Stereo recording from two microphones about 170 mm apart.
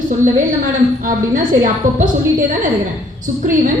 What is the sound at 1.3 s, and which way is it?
Speech, 50° right (ahead or behind).